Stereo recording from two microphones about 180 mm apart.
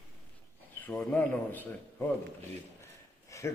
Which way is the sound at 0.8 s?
10° left (ahead or behind).